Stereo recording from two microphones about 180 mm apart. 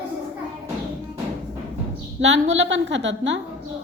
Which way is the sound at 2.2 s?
90° right.